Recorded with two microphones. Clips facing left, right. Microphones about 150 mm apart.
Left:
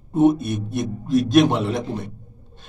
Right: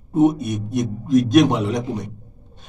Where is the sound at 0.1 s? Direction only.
15° right (ahead or behind).